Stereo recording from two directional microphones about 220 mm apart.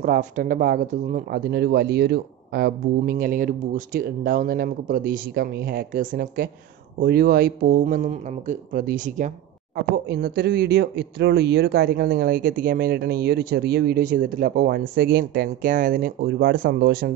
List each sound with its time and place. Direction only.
0.0 s speech: 40° right (ahead or behind)
10.0 s speech: 45° right (ahead or behind)